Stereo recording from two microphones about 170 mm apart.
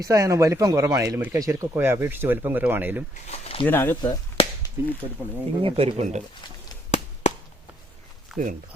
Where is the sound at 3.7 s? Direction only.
10° left (ahead or behind).